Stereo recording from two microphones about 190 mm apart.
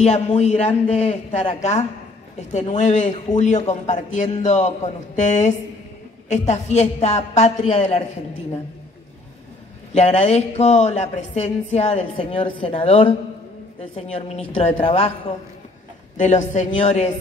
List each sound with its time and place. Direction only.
0.0 s speech: 35° left (ahead or behind)
9.9 s speech: 35° left (ahead or behind)
14.1 s speech: 35° left (ahead or behind)